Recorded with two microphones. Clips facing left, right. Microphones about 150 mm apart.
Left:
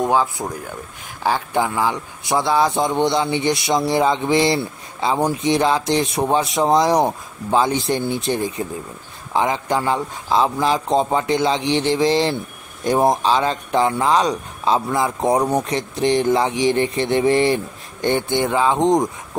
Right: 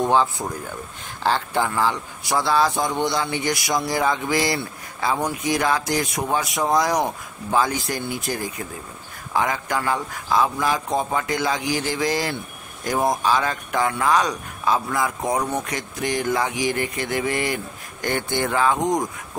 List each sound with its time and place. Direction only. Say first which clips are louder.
0.0 s speech: left 1 dB; 5° left (ahead or behind)